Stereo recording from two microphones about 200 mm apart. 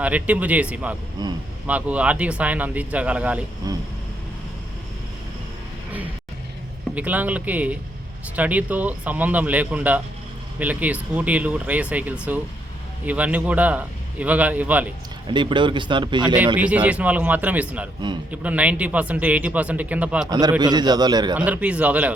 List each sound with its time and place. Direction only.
0.0 s speech: 5° right (ahead or behind)
1.2 s speech: 20° right (ahead or behind)
1.6 s speech: 5° right (ahead or behind)
3.6 s speech: 20° right (ahead or behind)
6.9 s speech: 10° right (ahead or behind)
15.3 s speech: 25° right (ahead or behind)
16.6 s speech: 5° right (ahead or behind)
20.6 s speech: 20° right (ahead or behind)
21.3 s speech: 5° right (ahead or behind)